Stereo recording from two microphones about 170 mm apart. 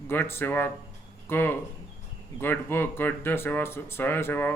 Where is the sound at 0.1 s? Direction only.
15° left (ahead or behind).